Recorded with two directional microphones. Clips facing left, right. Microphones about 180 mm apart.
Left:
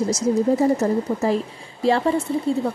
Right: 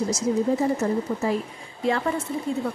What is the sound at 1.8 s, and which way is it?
Speech, 30° left (ahead or behind).